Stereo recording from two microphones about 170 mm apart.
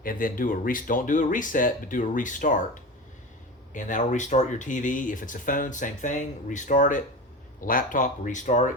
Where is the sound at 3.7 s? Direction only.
50° left (ahead or behind).